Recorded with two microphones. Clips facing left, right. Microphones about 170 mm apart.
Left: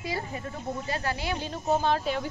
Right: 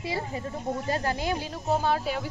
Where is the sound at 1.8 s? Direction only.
5° right (ahead or behind).